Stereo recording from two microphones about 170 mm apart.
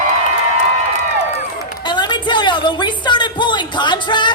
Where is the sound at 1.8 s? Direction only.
25° left (ahead or behind).